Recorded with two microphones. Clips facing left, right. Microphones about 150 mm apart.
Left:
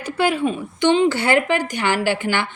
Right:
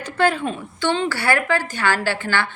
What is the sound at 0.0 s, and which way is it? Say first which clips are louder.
Speech: left 1 dB; 10° left (ahead or behind).